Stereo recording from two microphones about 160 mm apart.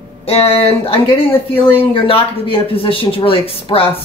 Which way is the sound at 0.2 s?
40° left (ahead or behind).